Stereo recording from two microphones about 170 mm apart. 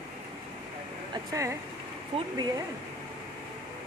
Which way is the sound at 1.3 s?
20° right (ahead or behind).